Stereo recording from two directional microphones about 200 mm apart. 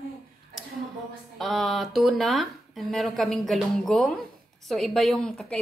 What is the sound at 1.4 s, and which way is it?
A woman's voice, centre (ahead or behind).